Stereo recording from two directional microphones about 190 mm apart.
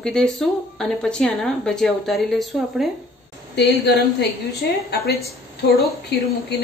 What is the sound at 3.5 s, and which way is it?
Speech, 60° left (ahead or behind).